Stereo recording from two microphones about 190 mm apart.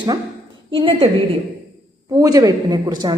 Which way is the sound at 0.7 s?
30° right (ahead or behind).